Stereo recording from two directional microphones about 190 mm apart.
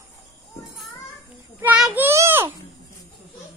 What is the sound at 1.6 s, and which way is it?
Child singing, 5° right (ahead or behind).